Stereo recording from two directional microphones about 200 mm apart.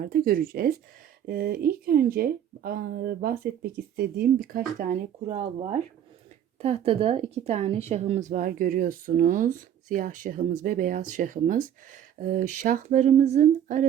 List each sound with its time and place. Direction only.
0.0 s speech: 45° right (ahead or behind)